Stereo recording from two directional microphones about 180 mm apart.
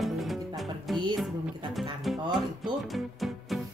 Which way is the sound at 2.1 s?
Centre (ahead or behind).